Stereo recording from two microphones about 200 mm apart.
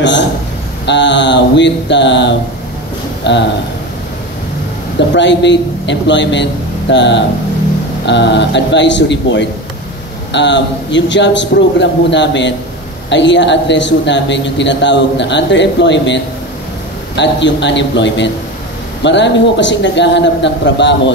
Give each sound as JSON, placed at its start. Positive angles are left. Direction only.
{"t": 0.8, "sound": "a man's voice", "side_deg": 60}
{"t": 5.1, "sound": "a man's voice", "side_deg": 60}